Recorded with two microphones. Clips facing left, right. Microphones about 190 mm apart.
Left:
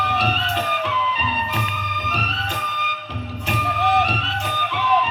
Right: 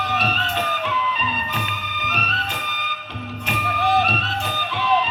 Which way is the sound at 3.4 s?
20° left (ahead or behind).